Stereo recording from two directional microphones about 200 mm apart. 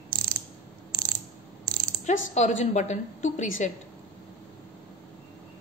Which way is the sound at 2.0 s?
35° left (ahead or behind).